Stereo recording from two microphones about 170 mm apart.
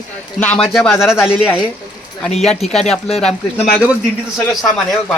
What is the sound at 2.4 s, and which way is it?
Speech, 40° left (ahead or behind).